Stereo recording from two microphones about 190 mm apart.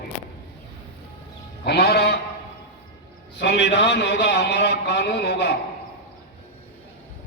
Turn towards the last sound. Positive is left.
turn(degrees=65)  # may be behind; listen again after turning